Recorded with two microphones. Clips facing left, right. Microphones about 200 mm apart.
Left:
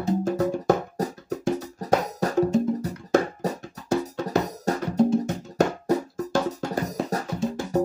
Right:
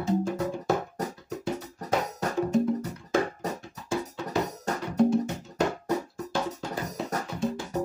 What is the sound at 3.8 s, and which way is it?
Music, 40° left (ahead or behind).